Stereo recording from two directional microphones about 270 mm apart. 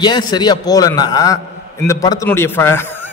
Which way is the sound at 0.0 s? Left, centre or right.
Centre.